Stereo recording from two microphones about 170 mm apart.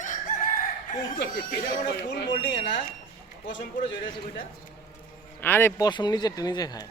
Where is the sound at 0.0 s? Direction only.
50° left (ahead or behind).